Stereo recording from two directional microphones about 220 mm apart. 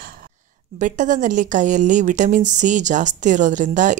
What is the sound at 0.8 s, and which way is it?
A woman's voice, 35° right (ahead or behind).